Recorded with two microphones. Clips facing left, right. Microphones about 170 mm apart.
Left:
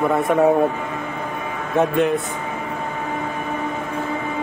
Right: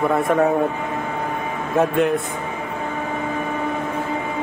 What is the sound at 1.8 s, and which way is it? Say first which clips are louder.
Speech: even; centre (ahead or behind).